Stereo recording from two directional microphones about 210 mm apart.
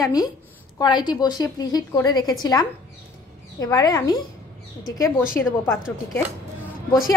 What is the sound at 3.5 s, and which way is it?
A woman's voice, 20° left (ahead or behind).